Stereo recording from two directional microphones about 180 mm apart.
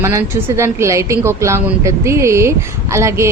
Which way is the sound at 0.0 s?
15° right (ahead or behind).